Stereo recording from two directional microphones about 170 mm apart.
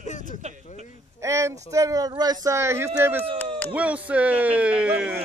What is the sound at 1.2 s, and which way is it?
Speech, 15° right (ahead or behind).